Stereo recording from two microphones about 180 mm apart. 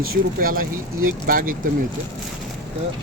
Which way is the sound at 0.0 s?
55° right (ahead or behind).